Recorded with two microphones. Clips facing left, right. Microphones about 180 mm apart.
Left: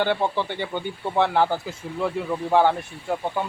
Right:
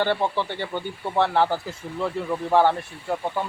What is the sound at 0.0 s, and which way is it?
Speech, 10° left (ahead or behind).